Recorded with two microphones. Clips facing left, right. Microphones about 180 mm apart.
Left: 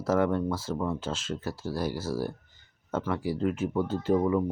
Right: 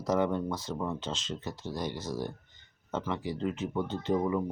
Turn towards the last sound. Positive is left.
turn(degrees=5)  # may be behind; listen again after turning